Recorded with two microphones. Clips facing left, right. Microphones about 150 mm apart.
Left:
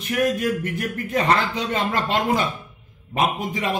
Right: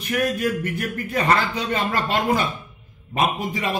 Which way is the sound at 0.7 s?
20° left (ahead or behind).